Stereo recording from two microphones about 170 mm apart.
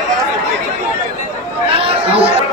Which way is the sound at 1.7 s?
35° right (ahead or behind).